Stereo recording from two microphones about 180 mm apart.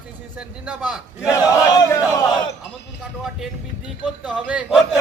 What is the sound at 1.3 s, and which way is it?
Battle cry, 15° left (ahead or behind).